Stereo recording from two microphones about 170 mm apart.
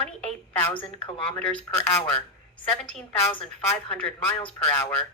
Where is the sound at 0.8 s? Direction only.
30° left (ahead or behind).